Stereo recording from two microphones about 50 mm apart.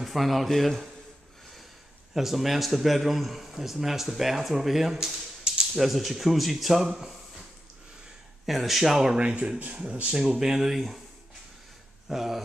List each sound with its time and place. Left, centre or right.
0.0 s a man's voice: centre
2.1 s a man's voice: centre
8.5 s a man's voice: centre
9.2 s speech: right
10.1 s speech: centre
12.1 s speech: centre